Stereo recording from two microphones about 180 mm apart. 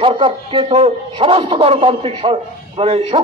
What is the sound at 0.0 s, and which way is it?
A man's voice, 30° right (ahead or behind).